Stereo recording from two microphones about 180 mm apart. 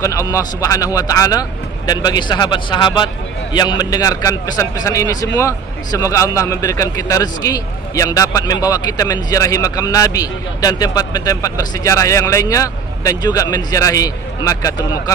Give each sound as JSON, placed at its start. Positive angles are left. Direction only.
{"t": 0.0, "sound": "a man's voice", "side_deg": 15}